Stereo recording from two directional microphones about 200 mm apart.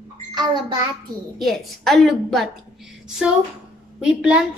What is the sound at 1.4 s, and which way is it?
A child's voice, centre (ahead or behind).